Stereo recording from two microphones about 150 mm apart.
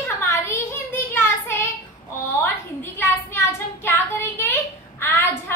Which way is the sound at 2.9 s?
15° left (ahead or behind).